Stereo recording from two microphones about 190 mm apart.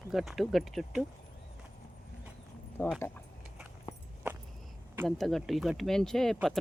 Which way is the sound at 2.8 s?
10° left (ahead or behind).